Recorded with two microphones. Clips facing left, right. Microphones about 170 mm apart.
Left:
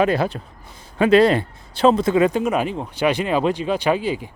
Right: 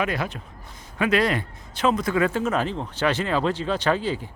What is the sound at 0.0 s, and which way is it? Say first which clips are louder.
A man's voice: left 8 dB; 30° left (ahead or behind).